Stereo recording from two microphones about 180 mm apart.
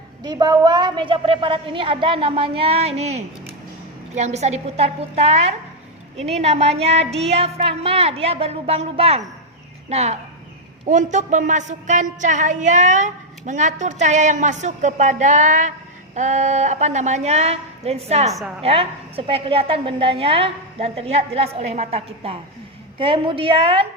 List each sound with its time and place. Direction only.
0.2 s a woman's voice: 25° right (ahead or behind)